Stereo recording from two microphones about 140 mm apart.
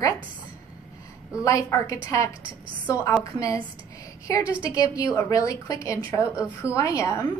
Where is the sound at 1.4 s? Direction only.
25° left (ahead or behind).